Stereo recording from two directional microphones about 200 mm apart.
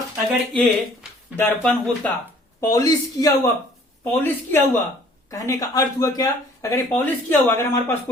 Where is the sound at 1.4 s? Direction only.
5° left (ahead or behind).